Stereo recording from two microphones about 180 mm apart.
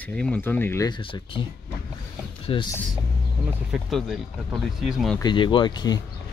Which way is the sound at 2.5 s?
30° left (ahead or behind).